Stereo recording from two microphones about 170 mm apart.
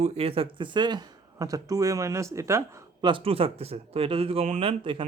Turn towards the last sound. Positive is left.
turn(degrees=-30)  # may be behind; listen again after turning